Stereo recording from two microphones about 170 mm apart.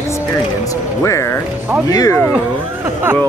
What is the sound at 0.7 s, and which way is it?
Speech, 15° left (ahead or behind).